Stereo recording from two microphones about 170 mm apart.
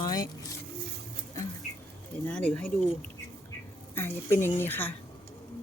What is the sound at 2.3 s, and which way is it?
Speech, 5° left (ahead or behind).